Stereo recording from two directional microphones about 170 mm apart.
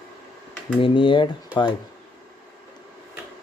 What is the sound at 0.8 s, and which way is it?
Speech, 30° left (ahead or behind).